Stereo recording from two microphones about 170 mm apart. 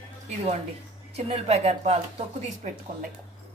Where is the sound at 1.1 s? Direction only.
40° right (ahead or behind).